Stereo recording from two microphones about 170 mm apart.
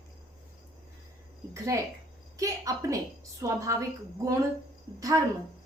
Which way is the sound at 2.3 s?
20° right (ahead or behind).